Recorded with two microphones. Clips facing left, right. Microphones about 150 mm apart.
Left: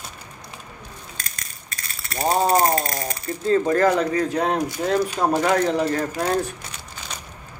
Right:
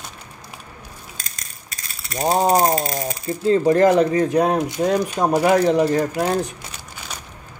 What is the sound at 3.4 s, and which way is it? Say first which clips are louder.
Speech: right 3 dB; 25° right (ahead or behind).